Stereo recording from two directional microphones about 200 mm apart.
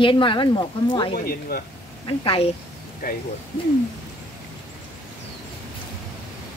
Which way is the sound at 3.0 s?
45° left (ahead or behind).